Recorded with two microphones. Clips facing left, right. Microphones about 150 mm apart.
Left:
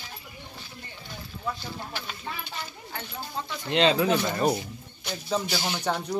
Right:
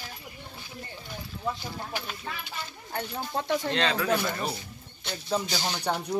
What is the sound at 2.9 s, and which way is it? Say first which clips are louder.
Speech: right 4 dB; 55° right (ahead or behind).